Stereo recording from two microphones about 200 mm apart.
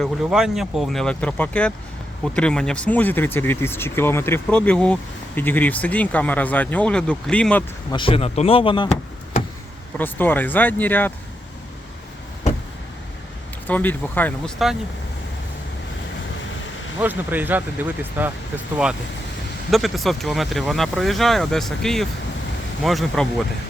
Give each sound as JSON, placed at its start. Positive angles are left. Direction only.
{"t": 0.0, "sound": "speech", "side_deg": 0}
{"t": 7.9, "sound": "speech", "side_deg": 25}
{"t": 10.0, "sound": "speech", "side_deg": 10}
{"t": 13.7, "sound": "speech", "side_deg": 10}
{"t": 17.0, "sound": "speech", "side_deg": -10}
{"t": 19.7, "sound": "speech", "side_deg": 0}